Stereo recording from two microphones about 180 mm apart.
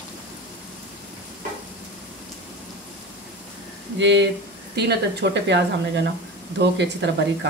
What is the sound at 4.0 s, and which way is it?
A woman's voice, 80° right.